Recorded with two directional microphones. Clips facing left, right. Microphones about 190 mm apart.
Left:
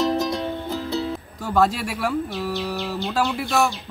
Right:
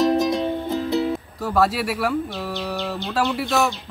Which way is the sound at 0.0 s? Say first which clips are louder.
Right 3 dB; 20° right (ahead or behind).